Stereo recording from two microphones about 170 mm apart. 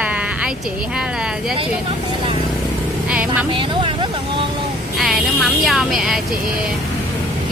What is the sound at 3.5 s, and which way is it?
Speech, 30° right (ahead or behind).